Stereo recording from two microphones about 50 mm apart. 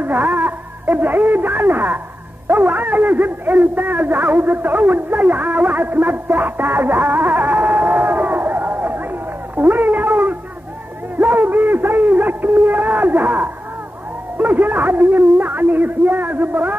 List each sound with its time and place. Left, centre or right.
0.0 s a man's voice: right
9.6 s a sound: right
14.4 s a man's voice: right